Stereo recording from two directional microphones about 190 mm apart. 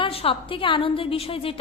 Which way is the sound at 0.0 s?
30° left (ahead or behind).